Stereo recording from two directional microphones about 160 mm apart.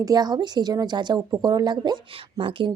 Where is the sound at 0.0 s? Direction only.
25° right (ahead or behind).